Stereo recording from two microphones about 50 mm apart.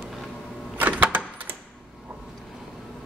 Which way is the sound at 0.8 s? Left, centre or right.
Right.